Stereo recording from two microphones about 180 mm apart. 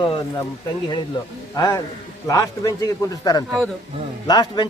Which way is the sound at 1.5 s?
25° left (ahead or behind).